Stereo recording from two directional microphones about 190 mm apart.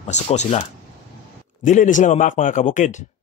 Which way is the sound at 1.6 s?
40° left (ahead or behind).